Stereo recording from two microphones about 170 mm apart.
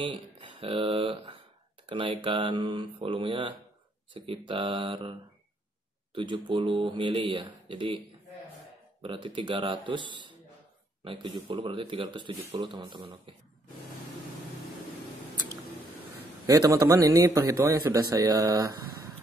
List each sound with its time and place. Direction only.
0.0 s a man's voice: 30° right (ahead or behind)
6.1 s a man's voice: 30° right (ahead or behind)
9.0 s a man's voice: 30° right (ahead or behind)
16.4 s a man's voice: 20° right (ahead or behind)